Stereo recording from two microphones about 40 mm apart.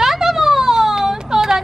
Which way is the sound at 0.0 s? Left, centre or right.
Centre.